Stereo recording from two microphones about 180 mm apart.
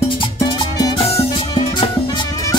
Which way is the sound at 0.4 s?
20° left (ahead or behind).